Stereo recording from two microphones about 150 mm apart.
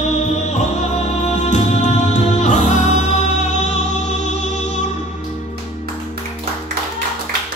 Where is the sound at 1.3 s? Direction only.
50° left (ahead or behind).